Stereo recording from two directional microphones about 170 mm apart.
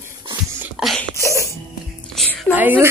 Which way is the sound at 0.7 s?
Centre (ahead or behind).